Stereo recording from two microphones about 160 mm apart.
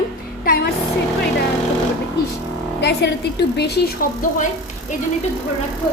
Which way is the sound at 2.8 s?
90° left.